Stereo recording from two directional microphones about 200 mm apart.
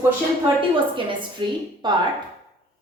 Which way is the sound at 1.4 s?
25° right (ahead or behind).